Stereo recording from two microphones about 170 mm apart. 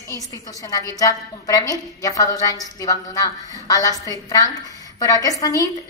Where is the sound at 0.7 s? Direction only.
20° left (ahead or behind).